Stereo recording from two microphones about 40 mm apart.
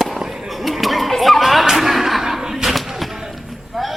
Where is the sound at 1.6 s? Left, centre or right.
Centre.